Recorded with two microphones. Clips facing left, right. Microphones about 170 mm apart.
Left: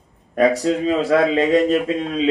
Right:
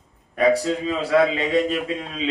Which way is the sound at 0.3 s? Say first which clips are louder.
Left 2 dB; 45° left (ahead or behind).